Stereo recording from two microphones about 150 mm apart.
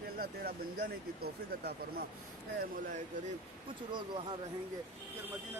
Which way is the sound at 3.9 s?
30° right (ahead or behind).